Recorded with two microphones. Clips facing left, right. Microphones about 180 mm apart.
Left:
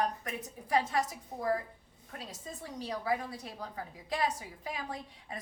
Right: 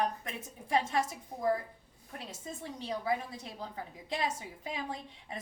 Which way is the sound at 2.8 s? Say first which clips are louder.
Even; 25° right (ahead or behind).